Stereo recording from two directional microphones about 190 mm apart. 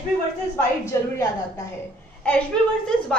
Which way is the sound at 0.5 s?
15° left (ahead or behind).